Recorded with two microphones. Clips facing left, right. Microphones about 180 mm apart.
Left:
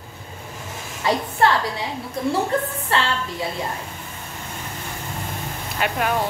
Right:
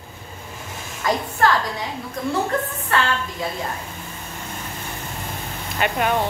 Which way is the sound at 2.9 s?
30° left (ahead or behind).